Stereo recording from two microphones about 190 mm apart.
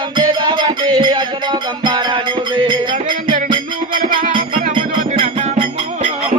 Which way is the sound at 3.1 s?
45° right (ahead or behind).